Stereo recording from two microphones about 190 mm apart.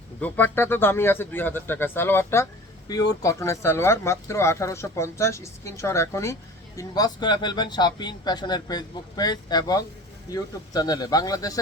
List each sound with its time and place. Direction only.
0.2 s speech: 10° left (ahead or behind)